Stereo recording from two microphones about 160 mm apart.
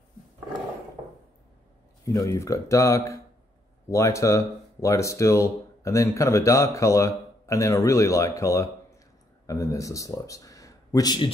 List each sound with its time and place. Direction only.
2.1 s speech: 20° left (ahead or behind)